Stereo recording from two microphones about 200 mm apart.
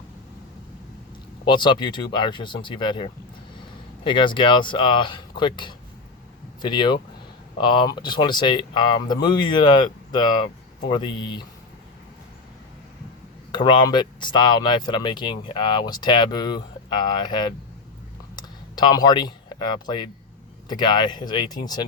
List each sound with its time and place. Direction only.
1.5 s speech: 25° left (ahead or behind)
13.5 s speech: 20° left (ahead or behind)
18.3 s a sound: 20° left (ahead or behind)
20.7 s speech: 20° left (ahead or behind)